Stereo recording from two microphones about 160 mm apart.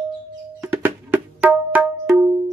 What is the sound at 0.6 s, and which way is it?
Music, 10° right (ahead or behind).